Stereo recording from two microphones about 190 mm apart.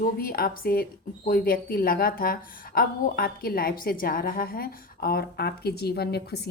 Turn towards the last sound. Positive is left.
turn(degrees=55)  # may be behind; listen again after turning